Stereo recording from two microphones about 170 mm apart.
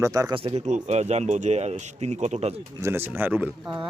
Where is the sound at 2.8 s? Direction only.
15° right (ahead or behind).